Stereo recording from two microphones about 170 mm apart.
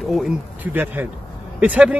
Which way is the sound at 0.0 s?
Centre (ahead or behind).